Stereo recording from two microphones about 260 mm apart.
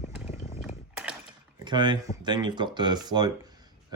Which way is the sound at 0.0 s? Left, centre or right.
Left.